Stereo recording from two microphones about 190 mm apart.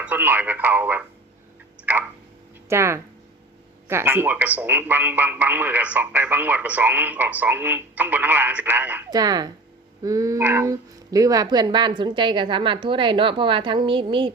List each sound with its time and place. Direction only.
0.0 s speech: 10° right (ahead or behind)
1.8 s tick-tock: 10° right (ahead or behind)
2.6 s speech: 15° right (ahead or behind)
9.0 s speech: 20° right (ahead or behind)